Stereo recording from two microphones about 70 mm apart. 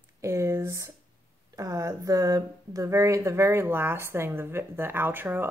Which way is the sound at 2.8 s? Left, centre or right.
Right.